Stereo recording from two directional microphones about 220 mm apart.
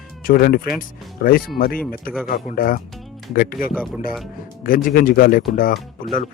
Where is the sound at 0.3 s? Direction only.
40° left (ahead or behind).